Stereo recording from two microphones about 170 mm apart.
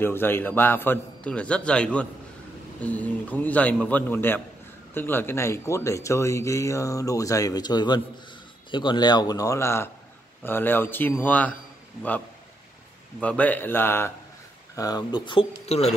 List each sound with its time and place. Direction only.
0.0 s speech: 10° left (ahead or behind)
13.2 s speech: 10° left (ahead or behind)
14.8 s speech: 25° left (ahead or behind)
15.6 s speech: 40° left (ahead or behind)